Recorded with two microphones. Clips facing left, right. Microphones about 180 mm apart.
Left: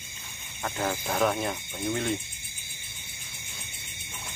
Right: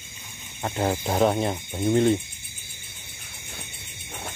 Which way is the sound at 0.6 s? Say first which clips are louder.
Right 5 dB; 25° right (ahead or behind).